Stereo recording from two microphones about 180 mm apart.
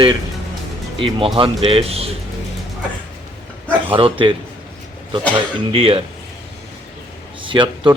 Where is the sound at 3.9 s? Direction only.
30° right (ahead or behind).